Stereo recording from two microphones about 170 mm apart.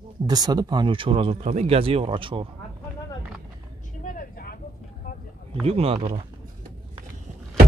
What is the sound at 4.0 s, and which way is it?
Vehicle, 55° left (ahead or behind).